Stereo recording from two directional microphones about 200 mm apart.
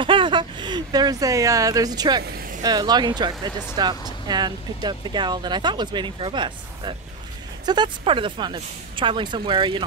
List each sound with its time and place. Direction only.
0.0 s speech: 25° right (ahead or behind)